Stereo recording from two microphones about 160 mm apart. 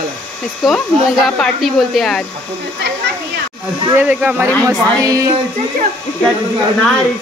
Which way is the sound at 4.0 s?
10° right (ahead or behind).